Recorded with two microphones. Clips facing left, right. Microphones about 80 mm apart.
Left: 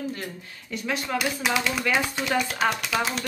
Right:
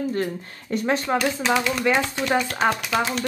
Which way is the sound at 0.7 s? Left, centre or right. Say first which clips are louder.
Right 7 dB; right.